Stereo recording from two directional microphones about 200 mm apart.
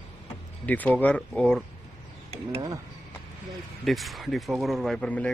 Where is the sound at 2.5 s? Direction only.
20° right (ahead or behind).